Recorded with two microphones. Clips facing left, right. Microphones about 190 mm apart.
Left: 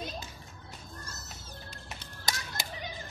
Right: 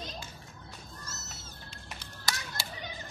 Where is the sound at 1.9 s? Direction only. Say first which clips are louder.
Left 1 dB; 20° left (ahead or behind).